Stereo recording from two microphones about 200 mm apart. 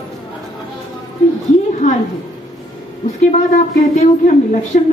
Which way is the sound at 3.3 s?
35° left (ahead or behind).